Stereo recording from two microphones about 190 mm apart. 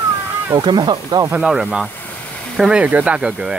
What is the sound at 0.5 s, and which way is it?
Speech, 25° right (ahead or behind).